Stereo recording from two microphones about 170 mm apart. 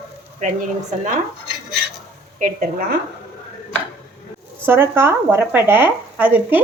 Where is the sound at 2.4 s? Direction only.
50° right (ahead or behind).